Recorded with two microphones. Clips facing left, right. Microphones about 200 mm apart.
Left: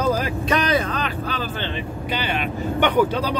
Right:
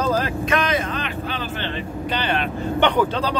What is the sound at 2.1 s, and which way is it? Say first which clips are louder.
Speech: right 1 dB; 10° left (ahead or behind).